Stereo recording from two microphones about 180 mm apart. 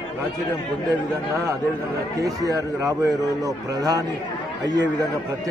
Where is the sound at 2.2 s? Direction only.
20° right (ahead or behind).